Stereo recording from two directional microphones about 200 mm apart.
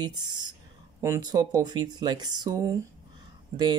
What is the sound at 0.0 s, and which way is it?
Speech, 20° right (ahead or behind).